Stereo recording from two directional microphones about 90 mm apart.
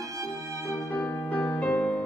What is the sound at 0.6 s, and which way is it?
Music, 35° left (ahead or behind).